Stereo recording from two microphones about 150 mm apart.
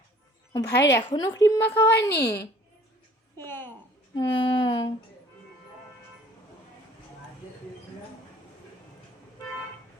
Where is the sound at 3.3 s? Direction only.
15° left (ahead or behind).